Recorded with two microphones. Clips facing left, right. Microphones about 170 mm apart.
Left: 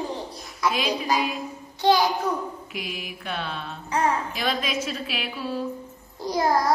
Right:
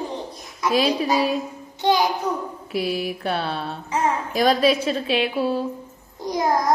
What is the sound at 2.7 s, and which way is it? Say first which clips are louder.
Mantra: right 10 dB; 35° right (ahead or behind).